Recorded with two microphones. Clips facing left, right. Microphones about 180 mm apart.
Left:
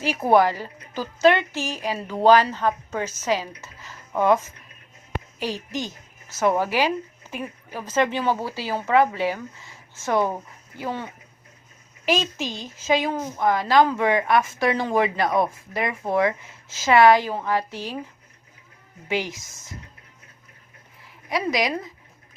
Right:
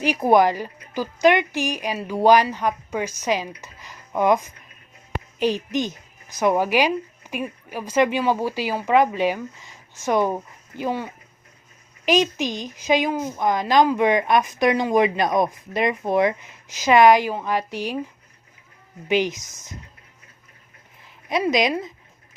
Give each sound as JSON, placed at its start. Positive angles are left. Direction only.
{"t": 0.0, "sound": "a woman's voice", "side_deg": -15}
{"t": 19.0, "sound": "speech", "side_deg": -20}
{"t": 21.2, "sound": "a sound", "side_deg": -20}